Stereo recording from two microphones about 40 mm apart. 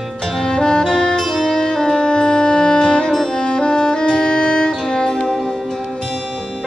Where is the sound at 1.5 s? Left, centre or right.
Centre.